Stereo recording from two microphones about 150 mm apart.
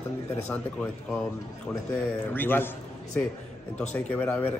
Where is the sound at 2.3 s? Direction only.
15° left (ahead or behind).